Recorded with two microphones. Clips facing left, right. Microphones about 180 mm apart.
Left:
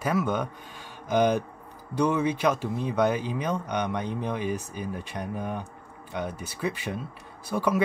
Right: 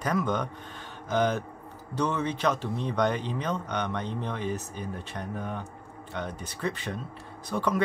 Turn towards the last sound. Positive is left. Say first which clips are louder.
# left 2 dB
turn(degrees=10)  # may be behind; listen again after turning